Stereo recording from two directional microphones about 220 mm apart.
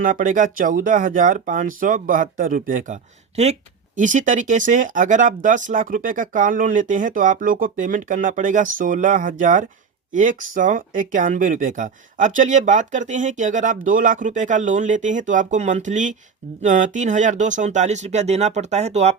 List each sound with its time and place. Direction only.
0.0 s speech: 35° right (ahead or behind)